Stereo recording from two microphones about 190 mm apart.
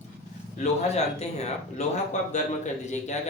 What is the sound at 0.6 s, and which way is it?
A man's voice, 35° left (ahead or behind).